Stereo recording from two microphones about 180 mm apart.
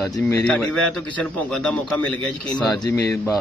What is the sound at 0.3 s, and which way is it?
A man's voice, 5° left (ahead or behind).